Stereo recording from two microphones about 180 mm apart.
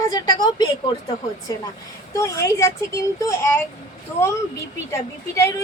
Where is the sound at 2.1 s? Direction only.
15° left (ahead or behind).